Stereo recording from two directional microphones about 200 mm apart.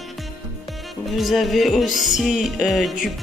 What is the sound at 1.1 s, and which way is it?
Music, centre (ahead or behind).